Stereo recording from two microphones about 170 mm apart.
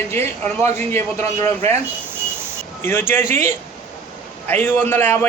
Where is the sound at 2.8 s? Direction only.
15° left (ahead or behind).